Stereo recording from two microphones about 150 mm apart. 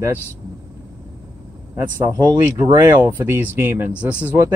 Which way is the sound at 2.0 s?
15° right (ahead or behind).